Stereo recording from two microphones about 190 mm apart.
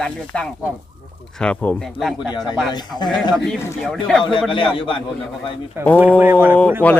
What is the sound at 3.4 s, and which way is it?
Speech, centre (ahead or behind).